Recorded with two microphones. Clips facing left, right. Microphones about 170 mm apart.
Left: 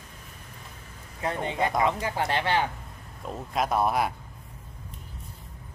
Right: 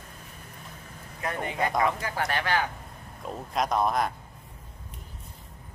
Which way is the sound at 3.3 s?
5° left (ahead or behind).